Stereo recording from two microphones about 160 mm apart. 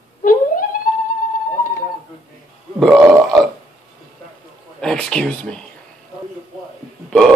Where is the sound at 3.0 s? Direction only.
20° right (ahead or behind).